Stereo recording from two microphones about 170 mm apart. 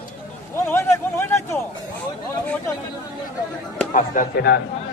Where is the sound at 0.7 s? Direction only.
15° left (ahead or behind).